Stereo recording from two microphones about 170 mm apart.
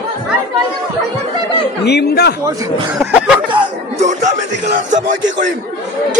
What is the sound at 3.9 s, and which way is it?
Speech, 45° right (ahead or behind).